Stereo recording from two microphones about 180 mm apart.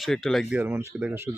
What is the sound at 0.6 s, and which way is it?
Speech, 10° right (ahead or behind).